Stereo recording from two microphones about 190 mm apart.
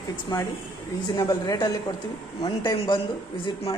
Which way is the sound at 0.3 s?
25° left (ahead or behind).